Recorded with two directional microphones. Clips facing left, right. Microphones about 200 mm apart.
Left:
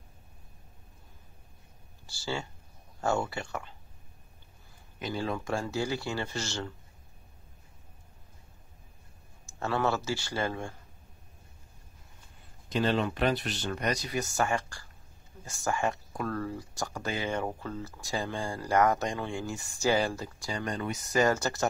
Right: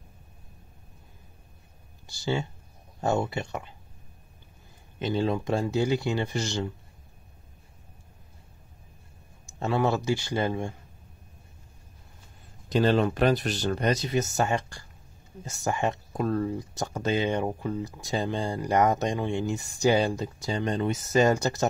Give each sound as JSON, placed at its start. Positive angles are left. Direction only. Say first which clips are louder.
{"t": 2.0, "sound": "speech", "louder": "right 6 dB", "side_deg": -20}
{"t": 4.9, "sound": "speech", "louder": "right 6 dB", "side_deg": -25}
{"t": 9.5, "sound": "speech", "louder": "right 4 dB", "side_deg": -15}
{"t": 12.6, "sound": "speech", "louder": "right 5 dB", "side_deg": -40}